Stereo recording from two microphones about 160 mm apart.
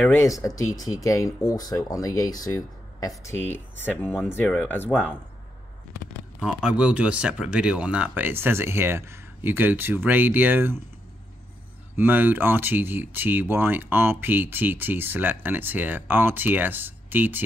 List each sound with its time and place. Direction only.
0.7 s speech: 20° left (ahead or behind)
6.4 s speech: 5° right (ahead or behind)
11.9 s speech: 10° right (ahead or behind)